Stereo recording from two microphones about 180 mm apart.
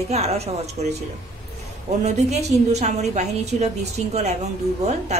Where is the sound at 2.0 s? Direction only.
40° right (ahead or behind).